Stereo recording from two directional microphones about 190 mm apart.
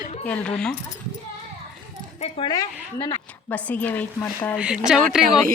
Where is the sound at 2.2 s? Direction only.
25° left (ahead or behind).